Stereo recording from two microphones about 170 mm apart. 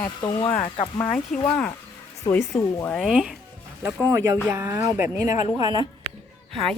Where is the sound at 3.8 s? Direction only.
15° right (ahead or behind).